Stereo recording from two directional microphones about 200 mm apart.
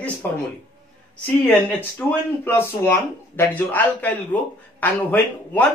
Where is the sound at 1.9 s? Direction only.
10° left (ahead or behind).